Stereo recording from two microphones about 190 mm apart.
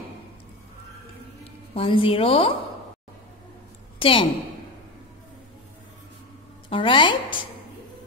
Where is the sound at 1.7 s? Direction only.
30° left (ahead or behind).